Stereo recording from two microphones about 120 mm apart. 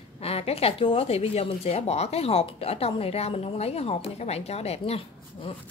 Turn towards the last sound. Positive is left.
turn(degrees=55)  # may be behind; listen again after turning